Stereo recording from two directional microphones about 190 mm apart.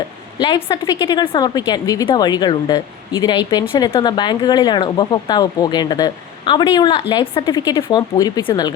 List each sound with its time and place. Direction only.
0.3 s a woman's voice: 25° left (ahead or behind)